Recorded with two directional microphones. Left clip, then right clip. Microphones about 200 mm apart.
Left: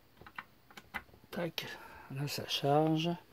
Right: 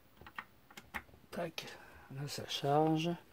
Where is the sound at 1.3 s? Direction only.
50° left (ahead or behind).